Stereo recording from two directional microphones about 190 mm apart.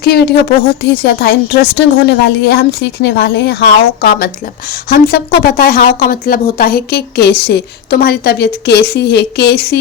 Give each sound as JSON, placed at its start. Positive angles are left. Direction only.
{"t": 0.0, "sound": "speech", "side_deg": 55}